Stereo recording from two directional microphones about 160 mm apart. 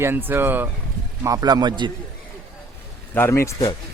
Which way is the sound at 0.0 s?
15° right (ahead or behind).